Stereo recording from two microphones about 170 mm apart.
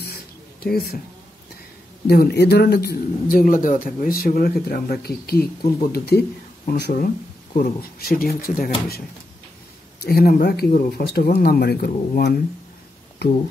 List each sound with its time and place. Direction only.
0.6 s speech: 65° left (ahead or behind)
2.0 s speech: 70° left (ahead or behind)
10.0 s speech: 60° left (ahead or behind)